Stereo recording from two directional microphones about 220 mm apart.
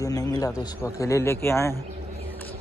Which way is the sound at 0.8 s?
15° left (ahead or behind).